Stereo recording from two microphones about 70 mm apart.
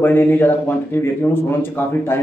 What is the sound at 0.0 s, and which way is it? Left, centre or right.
Speech, left.